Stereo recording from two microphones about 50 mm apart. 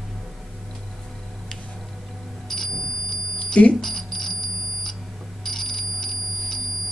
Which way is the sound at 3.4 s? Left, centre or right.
Left.